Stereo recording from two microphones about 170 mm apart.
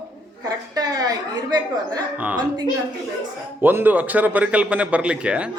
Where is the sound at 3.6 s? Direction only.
10° right (ahead or behind).